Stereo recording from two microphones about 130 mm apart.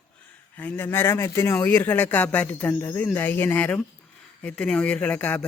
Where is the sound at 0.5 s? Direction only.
10° left (ahead or behind).